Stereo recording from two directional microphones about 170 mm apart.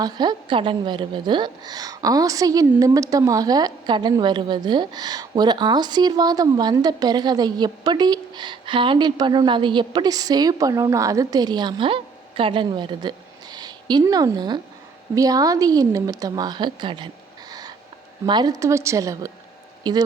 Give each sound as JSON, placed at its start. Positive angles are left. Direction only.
{"t": 0.0, "sound": "a woman's voice", "side_deg": -25}
{"t": 17.5, "sound": "owl", "side_deg": -20}
{"t": 18.3, "sound": "a woman's voice", "side_deg": -25}